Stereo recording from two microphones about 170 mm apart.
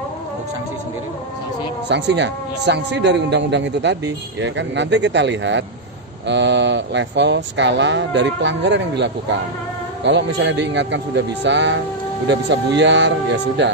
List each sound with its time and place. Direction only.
1.9 s a man's voice: 90° right